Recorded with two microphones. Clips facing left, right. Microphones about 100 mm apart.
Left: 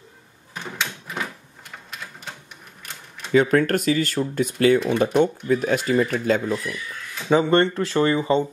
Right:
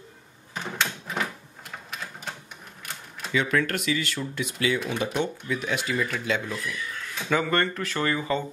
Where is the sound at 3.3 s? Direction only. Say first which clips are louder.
Left 8 dB; 40° left (ahead or behind).